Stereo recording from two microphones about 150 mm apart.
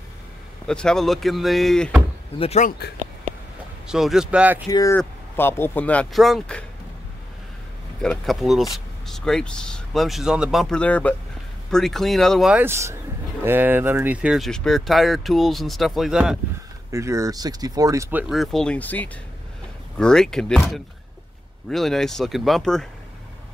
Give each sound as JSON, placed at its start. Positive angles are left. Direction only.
{"t": 0.7, "sound": "speech", "side_deg": 5}
{"t": 2.3, "sound": "speech", "side_deg": 40}
{"t": 2.8, "sound": "speech", "side_deg": 90}
{"t": 3.8, "sound": "speech", "side_deg": -5}
{"t": 4.6, "sound": "speech", "side_deg": 25}
{"t": 4.9, "sound": "speech", "side_deg": 15}
{"t": 8.0, "sound": "speech", "side_deg": 5}
{"t": 12.6, "sound": "speech", "side_deg": -20}
{"t": 16.9, "sound": "speech", "side_deg": -20}
{"t": 18.3, "sound": "speech", "side_deg": 0}